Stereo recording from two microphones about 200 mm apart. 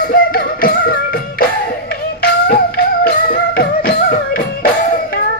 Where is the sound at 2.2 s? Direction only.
50° left (ahead or behind).